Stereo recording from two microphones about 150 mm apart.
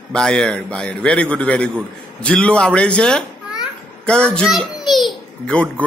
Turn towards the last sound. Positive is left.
turn(degrees=5)  # may be behind; listen again after turning